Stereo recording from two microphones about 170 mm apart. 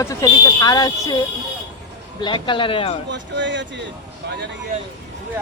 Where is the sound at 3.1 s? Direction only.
90° right.